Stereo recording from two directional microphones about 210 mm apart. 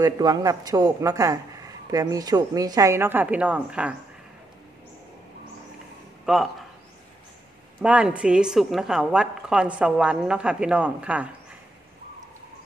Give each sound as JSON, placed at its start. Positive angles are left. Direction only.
{"t": 0.0, "sound": "a woman's voice", "side_deg": -20}
{"t": 6.2, "sound": "speech", "side_deg": 0}
{"t": 7.8, "sound": "a woman's voice", "side_deg": -5}